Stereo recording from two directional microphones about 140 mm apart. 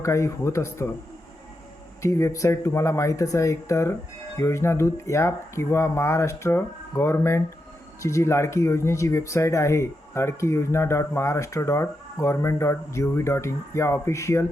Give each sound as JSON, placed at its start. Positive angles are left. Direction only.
{"t": 0.0, "sound": "speech", "side_deg": 20}
{"t": 2.0, "sound": "speech", "side_deg": 20}